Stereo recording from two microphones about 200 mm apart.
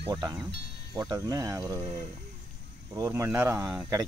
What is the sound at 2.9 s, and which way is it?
Speech, 15° right (ahead or behind).